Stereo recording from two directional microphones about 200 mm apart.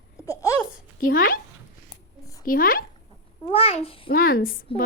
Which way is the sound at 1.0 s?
45° left (ahead or behind).